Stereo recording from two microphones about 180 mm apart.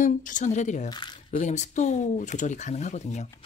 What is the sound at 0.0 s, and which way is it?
Speech, 45° left (ahead or behind).